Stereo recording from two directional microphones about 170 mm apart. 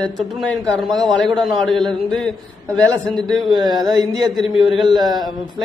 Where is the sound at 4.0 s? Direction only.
Centre (ahead or behind).